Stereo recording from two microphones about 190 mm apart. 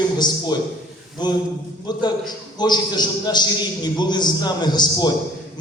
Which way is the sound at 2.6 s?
20° left (ahead or behind).